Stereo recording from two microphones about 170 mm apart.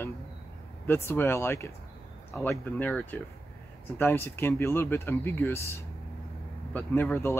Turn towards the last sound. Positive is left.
turn(degrees=15)  # may be behind; listen again after turning